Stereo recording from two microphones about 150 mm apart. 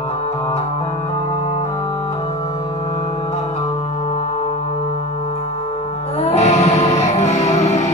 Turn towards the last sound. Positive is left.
turn(degrees=45)  # may be behind; listen again after turning